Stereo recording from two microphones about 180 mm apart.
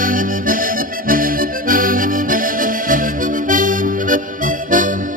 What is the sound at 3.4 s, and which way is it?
Music, 45° right (ahead or behind).